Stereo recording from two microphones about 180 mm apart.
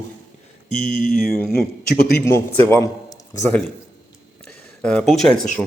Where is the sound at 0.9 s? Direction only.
45° left (ahead or behind).